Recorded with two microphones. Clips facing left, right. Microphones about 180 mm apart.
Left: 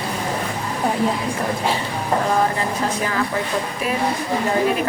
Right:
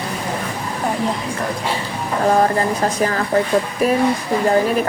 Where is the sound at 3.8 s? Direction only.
40° right (ahead or behind).